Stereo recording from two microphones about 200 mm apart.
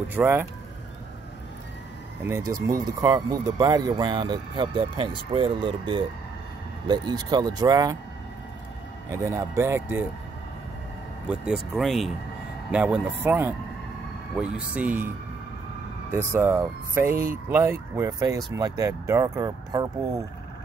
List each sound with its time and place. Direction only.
0.1 s speech: 10° right (ahead or behind)
2.2 s speech: 15° right (ahead or behind)
9.1 s speech: 15° right (ahead or behind)
11.2 s speech: 5° right (ahead or behind)
16.3 s speech: 15° right (ahead or behind)